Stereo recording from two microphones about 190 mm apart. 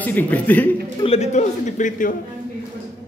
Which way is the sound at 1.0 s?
35° left (ahead or behind).